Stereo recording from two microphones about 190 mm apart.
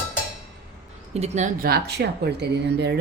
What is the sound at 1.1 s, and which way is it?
Speech, 35° right (ahead or behind).